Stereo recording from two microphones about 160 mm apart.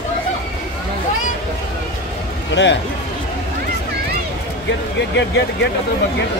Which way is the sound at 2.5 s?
90° left.